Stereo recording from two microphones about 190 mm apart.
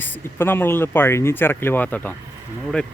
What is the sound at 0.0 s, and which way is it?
Speech, 10° left (ahead or behind).